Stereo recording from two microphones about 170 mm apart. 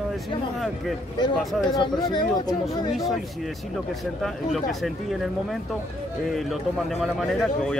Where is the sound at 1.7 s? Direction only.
25° left (ahead or behind).